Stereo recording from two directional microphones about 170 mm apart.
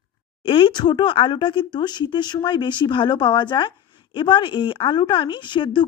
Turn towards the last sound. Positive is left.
turn(degrees=30)  # may be behind; listen again after turning